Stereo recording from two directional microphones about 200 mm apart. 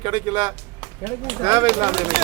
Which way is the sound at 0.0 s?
25° right (ahead or behind).